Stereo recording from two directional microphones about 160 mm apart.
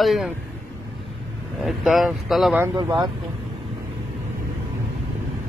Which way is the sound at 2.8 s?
25° right (ahead or behind).